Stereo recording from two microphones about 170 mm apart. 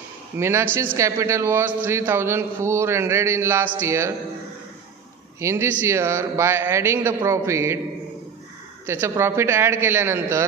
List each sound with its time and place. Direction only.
0.4 s a man's voice: 15° right (ahead or behind)
5.4 s a man's voice: 15° right (ahead or behind)
8.8 s a man's voice: 15° right (ahead or behind)